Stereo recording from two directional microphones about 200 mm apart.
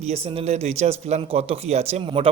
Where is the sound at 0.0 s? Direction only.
30° right (ahead or behind).